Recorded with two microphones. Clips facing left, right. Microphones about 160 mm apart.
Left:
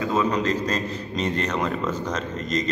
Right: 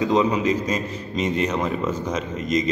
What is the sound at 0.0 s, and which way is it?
A man's voice, 20° right (ahead or behind).